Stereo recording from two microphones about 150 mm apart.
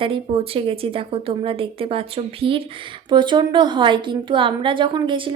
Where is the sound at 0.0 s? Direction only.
40° right (ahead or behind).